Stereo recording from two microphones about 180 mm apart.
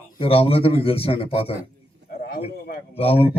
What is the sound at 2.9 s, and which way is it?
Speech, 30° left (ahead or behind).